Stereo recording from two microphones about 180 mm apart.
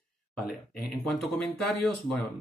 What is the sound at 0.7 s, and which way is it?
Speech, 55° left (ahead or behind).